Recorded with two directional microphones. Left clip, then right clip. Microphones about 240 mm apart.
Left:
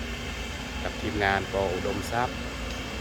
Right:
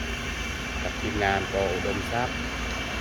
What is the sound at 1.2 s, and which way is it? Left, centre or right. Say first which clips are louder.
Speech: even; centre.